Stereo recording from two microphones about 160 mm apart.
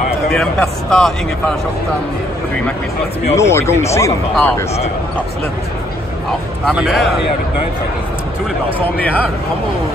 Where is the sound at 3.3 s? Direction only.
15° left (ahead or behind).